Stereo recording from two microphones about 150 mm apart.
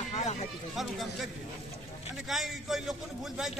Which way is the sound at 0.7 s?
Centre (ahead or behind).